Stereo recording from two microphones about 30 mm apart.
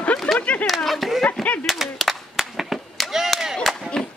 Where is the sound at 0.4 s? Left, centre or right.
Left.